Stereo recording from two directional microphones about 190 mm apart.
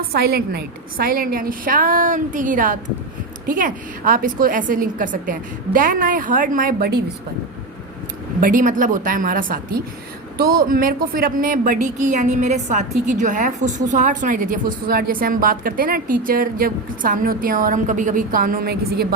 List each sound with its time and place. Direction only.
0.1 s a woman's voice: 55° right (ahead or behind)
8.4 s a woman's voice: 45° right (ahead or behind)